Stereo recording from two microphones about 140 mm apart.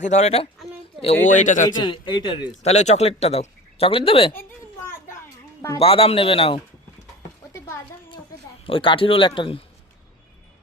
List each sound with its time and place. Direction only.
0.0 s speech: 55° left (ahead or behind)
1.7 s a man's voice: 35° left (ahead or behind)
2.5 s speech: 55° left (ahead or behind)
4.3 s children playing: 15° left (ahead or behind)
5.8 s a man's voice: 40° left (ahead or behind)
8.6 s a man's voice: 40° left (ahead or behind)